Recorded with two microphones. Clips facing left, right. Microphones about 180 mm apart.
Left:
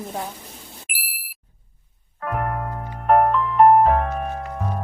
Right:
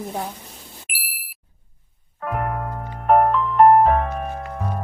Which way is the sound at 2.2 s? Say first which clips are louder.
Even; centre (ahead or behind).